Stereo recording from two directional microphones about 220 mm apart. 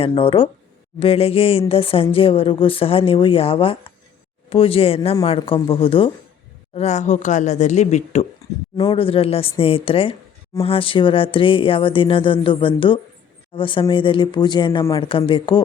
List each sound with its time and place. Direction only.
0.0 s speech: 25° left (ahead or behind)